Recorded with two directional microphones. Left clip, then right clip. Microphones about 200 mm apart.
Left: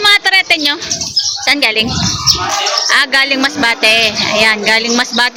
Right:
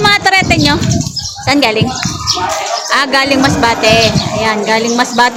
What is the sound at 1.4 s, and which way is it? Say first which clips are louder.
Speech: right 2 dB; centre (ahead or behind).